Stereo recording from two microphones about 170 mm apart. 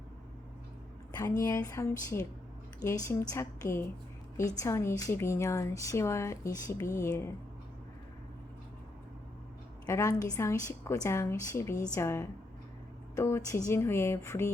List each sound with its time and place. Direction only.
1.4 s a woman's voice: 20° left (ahead or behind)
9.8 s a woman's voice: 15° left (ahead or behind)